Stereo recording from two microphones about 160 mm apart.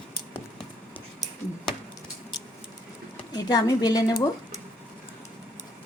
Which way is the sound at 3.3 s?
25° left (ahead or behind).